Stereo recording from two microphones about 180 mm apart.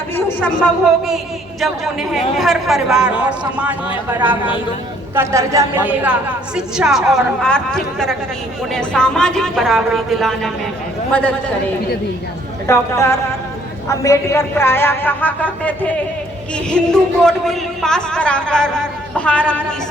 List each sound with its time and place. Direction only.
0.2 s a sound: 10° left (ahead or behind)
0.9 s a man's voice: centre (ahead or behind)
12.6 s a man's voice: 15° left (ahead or behind)